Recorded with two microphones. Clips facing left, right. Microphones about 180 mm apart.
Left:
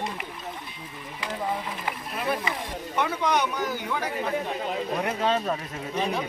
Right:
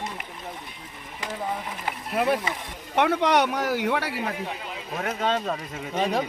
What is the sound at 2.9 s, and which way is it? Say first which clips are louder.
Speech: right 5 dB; 70° right (ahead or behind).